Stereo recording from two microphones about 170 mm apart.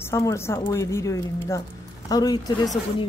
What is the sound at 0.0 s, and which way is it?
A woman's voice, 15° left (ahead or behind).